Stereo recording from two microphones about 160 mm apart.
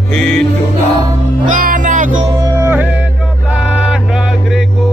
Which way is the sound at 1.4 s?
55° right (ahead or behind).